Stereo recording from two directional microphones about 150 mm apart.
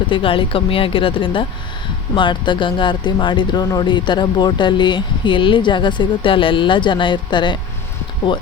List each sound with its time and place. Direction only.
0.1 s speech: 35° left (ahead or behind)